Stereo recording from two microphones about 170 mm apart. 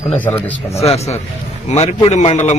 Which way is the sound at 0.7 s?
40° left (ahead or behind).